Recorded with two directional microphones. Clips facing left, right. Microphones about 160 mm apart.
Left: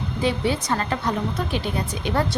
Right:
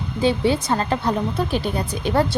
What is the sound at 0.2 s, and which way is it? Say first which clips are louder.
A woman's voice: right 4 dB; 30° right (ahead or behind).